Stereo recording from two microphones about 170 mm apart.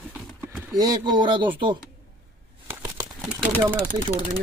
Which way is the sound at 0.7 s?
25° right (ahead or behind).